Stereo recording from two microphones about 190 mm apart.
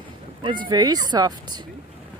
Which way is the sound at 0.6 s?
20° right (ahead or behind).